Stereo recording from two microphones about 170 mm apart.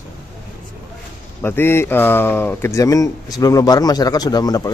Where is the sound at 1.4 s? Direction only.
15° left (ahead or behind).